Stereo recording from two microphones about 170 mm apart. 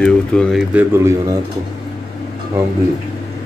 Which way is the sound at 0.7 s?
15° right (ahead or behind).